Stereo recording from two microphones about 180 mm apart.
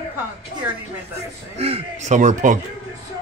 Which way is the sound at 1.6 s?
35° right (ahead or behind).